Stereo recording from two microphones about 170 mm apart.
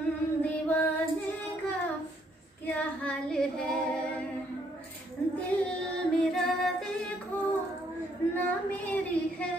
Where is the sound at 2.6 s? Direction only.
5° left (ahead or behind).